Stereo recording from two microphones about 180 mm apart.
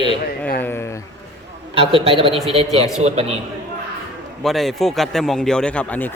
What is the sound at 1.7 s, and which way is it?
Speech, 30° right (ahead or behind).